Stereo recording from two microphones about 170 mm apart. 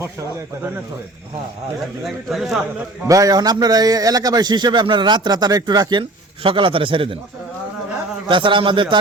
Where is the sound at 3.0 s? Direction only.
20° right (ahead or behind).